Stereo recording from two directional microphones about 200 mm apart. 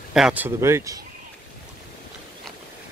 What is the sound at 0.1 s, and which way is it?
Speech, 5° right (ahead or behind).